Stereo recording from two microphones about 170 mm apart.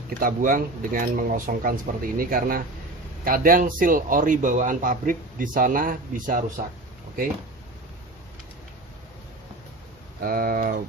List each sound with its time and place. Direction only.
0.2 s a man's voice: 55° right (ahead or behind)
10.2 s speech: 55° right (ahead or behind)